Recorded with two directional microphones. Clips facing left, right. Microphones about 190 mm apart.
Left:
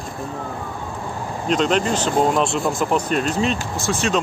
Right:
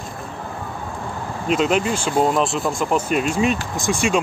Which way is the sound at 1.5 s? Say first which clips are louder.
Even; 5° right (ahead or behind).